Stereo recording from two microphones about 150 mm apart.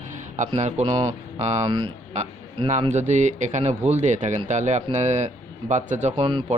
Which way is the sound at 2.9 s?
50° right (ahead or behind).